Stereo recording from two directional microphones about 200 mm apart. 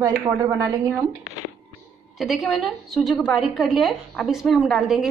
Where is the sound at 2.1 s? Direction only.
Centre (ahead or behind).